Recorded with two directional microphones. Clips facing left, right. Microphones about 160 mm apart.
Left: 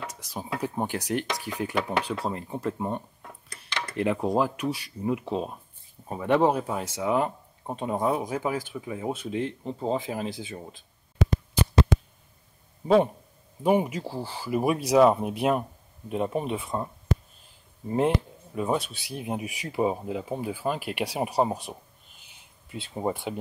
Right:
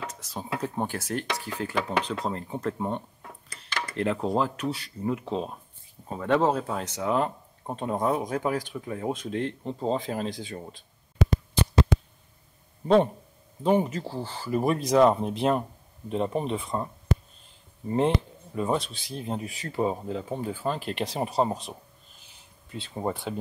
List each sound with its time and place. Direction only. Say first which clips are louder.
0.0 s a sound: even; 10° left (ahead or behind)
0.6 s speech: left 1 dB; 15° left (ahead or behind)
12.8 s speech: even; 5° left (ahead or behind)